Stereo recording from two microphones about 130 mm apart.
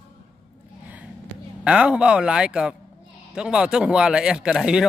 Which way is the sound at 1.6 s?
10° right (ahead or behind).